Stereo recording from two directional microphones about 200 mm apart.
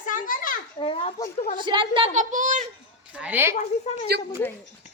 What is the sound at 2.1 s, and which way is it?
Speech, 40° right (ahead or behind).